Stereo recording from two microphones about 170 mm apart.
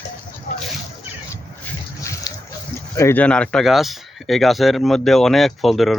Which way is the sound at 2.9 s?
15° left (ahead or behind).